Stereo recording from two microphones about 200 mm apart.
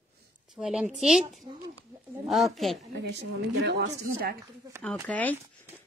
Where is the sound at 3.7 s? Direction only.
55° right (ahead or behind).